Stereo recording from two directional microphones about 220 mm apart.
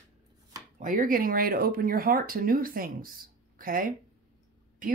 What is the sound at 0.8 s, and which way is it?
Speech, 40° right (ahead or behind).